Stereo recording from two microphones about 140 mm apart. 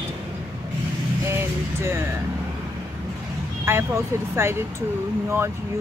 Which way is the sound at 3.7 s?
20° right (ahead or behind).